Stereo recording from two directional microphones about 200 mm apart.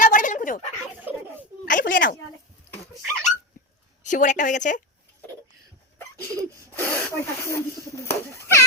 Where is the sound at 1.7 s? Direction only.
45° left (ahead or behind).